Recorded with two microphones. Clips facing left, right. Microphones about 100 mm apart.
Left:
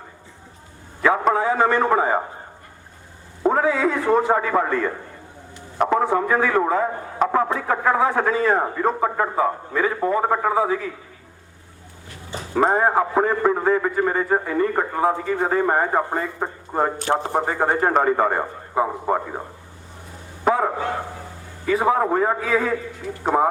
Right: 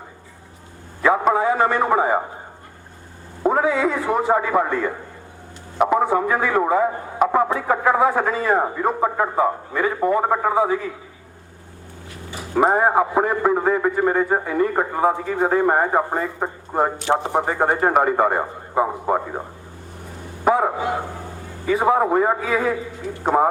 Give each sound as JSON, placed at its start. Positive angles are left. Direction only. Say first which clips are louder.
{"t": 1.0, "sound": "a sound", "louder": "right 1 dB", "side_deg": -5}
{"t": 3.4, "sound": "a man's voice", "louder": "even", "side_deg": -5}
{"t": 12.4, "sound": "a man's voice", "louder": "right 1 dB", "side_deg": -5}
{"t": 17.4, "sound": "a man's voice", "louder": "right 1 dB", "side_deg": -5}
{"t": 20.4, "sound": "a sound", "louder": "right 2 dB", "side_deg": -10}
{"t": 21.7, "sound": "a man's voice", "louder": "right 1 dB", "side_deg": -5}